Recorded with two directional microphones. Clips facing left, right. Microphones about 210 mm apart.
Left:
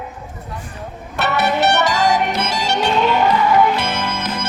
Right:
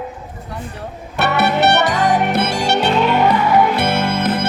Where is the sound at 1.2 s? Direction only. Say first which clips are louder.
Right 2 dB; 60° right (ahead or behind).